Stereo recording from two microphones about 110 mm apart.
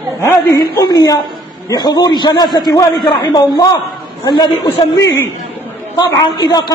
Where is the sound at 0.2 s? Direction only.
25° left (ahead or behind).